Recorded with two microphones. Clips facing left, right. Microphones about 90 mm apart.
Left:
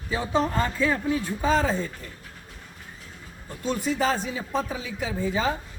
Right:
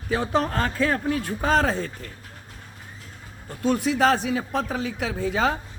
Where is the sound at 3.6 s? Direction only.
70° right (ahead or behind).